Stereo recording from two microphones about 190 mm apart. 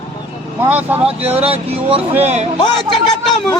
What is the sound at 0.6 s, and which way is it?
Speech, 10° right (ahead or behind).